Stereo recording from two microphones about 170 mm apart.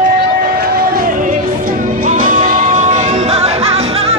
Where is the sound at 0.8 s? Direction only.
55° right (ahead or behind); by 4.1 s 35° right (ahead or behind).